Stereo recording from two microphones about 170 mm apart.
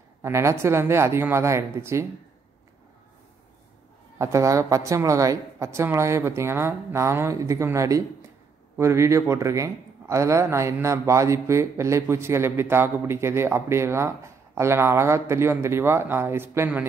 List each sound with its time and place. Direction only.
0.2 s speech: 15° right (ahead or behind)
4.2 s speech: 15° right (ahead or behind)